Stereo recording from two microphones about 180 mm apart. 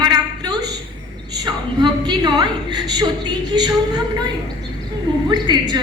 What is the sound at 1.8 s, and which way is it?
A woman's voice, 25° right (ahead or behind).